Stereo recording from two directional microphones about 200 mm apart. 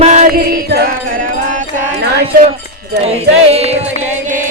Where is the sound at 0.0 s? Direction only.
40° right (ahead or behind).